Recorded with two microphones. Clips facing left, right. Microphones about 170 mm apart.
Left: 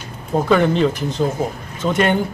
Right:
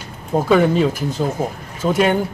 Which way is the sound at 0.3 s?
5° right (ahead or behind).